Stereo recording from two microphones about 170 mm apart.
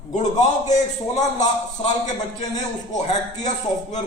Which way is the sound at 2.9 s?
45° left (ahead or behind).